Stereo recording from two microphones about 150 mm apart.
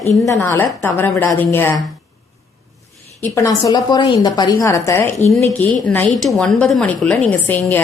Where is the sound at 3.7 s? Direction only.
30° left (ahead or behind); by 7.8 s 10° left (ahead or behind).